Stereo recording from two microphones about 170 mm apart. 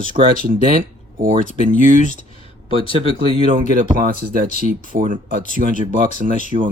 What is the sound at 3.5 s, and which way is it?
Speech, 50° right (ahead or behind).